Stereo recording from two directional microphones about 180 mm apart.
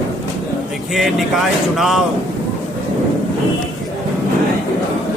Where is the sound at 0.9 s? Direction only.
Centre (ahead or behind).